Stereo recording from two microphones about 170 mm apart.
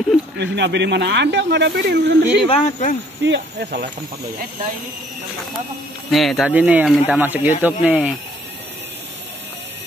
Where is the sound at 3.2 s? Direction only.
85° right.